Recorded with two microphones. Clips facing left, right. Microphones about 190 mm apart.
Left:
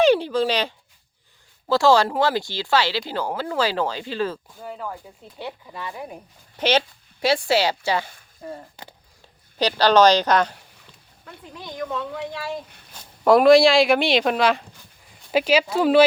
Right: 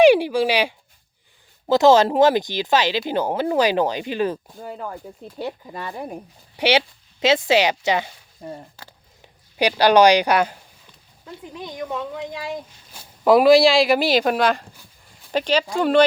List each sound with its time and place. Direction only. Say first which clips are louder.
0.0 s speech: right 4 dB; 10° right (ahead or behind)
5.4 s speech: right 4 dB; 40° right (ahead or behind)
6.6 s speech: right 2 dB; 15° right (ahead or behind)
8.7 s speech: left 2 dB; 15° left (ahead or behind)
9.6 s speech: right 2 dB; 15° right (ahead or behind)
12.9 s speech: right 1 dB; centre (ahead or behind)